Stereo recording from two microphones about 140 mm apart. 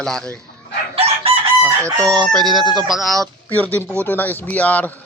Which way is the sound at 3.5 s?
10° left (ahead or behind).